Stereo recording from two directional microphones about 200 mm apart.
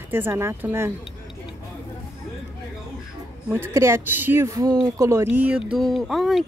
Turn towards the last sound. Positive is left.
turn(degrees=0)  # may be behind; listen again after turning